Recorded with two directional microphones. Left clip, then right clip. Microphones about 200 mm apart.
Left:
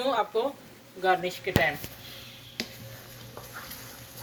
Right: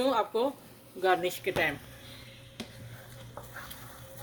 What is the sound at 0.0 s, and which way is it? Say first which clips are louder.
Speech: left 1 dB; 60° right (ahead or behind).